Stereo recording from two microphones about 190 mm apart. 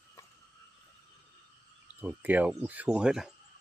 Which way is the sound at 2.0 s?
10° right (ahead or behind).